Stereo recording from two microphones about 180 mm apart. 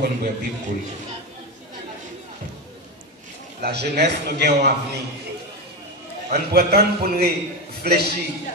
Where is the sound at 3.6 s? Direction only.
65° right (ahead or behind).